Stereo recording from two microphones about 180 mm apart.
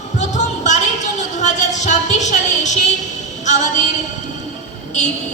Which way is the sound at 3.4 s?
40° left (ahead or behind).